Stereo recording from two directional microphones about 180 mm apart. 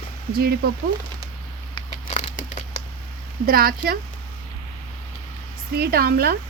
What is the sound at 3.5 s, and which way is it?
Speech, 55° right (ahead or behind).